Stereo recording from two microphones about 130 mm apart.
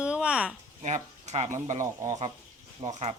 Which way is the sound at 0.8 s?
60° right (ahead or behind).